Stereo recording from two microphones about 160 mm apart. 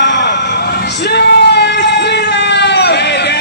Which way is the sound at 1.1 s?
90° left.